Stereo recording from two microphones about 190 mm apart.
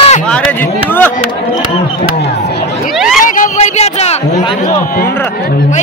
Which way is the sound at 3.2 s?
40° left (ahead or behind).